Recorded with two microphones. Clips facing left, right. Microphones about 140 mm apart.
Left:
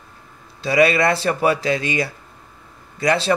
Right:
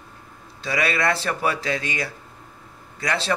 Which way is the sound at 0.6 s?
20° left (ahead or behind).